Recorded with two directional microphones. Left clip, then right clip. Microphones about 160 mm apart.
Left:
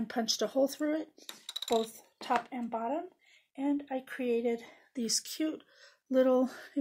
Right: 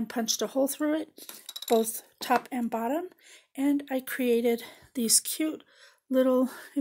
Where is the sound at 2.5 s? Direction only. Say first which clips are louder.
Right 5 dB; 90° right.